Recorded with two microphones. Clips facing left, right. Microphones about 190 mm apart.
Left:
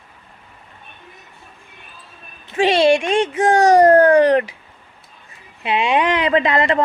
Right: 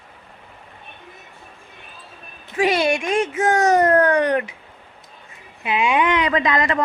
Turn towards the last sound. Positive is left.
turn(degrees=30)  # may be behind; listen again after turning